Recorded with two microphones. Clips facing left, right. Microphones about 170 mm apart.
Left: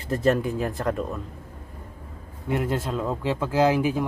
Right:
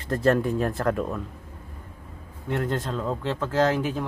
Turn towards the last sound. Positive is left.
turn(degrees=10)  # may be behind; listen again after turning